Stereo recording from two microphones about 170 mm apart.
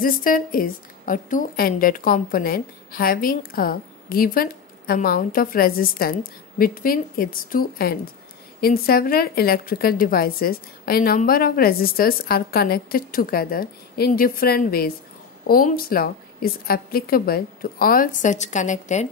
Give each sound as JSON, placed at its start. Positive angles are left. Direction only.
{"t": 0.0, "sound": "a woman's voice", "side_deg": 55}